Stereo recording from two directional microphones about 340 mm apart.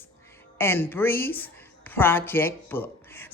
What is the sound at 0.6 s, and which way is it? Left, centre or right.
A woman's voice, centre.